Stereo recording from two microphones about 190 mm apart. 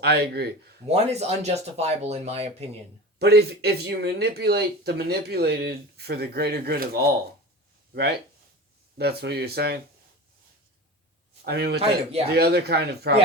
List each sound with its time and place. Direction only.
0.0 s speech: 55° right (ahead or behind)
0.9 s speech: 35° right (ahead or behind)
3.2 s speech: 60° right (ahead or behind)
9.0 s speech: 60° right (ahead or behind)
11.4 s speech: 60° right (ahead or behind)